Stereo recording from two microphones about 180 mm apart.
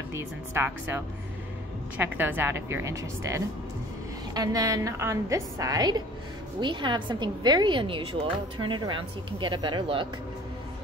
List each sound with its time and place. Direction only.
0.1 s a woman's voice: 15° right (ahead or behind)